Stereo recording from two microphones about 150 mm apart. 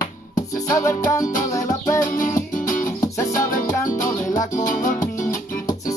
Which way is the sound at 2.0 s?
65° left (ahead or behind).